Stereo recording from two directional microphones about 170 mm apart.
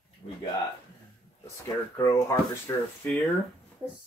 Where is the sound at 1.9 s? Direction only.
15° left (ahead or behind).